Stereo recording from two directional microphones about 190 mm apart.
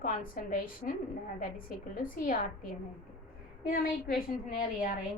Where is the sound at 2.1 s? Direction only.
45° left (ahead or behind).